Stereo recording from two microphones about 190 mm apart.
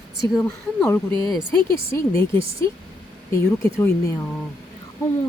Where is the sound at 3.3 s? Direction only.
15° left (ahead or behind).